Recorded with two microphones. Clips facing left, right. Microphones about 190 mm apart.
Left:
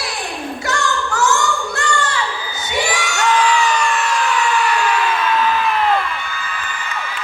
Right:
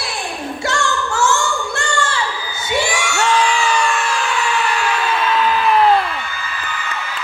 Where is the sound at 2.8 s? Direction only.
30° right (ahead or behind).